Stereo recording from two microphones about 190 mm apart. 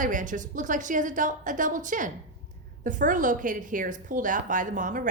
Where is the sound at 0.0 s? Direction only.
45° right (ahead or behind).